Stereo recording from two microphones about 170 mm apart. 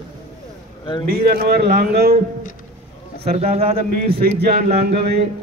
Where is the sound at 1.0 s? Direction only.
60° right (ahead or behind).